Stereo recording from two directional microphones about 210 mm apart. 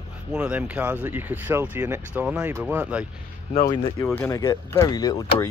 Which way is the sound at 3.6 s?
20° left (ahead or behind).